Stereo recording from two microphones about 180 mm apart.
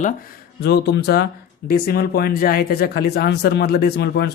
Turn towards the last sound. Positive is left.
turn(degrees=65)  # may be behind; listen again after turning